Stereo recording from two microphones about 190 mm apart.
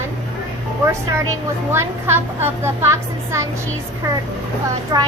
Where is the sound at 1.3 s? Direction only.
15° right (ahead or behind).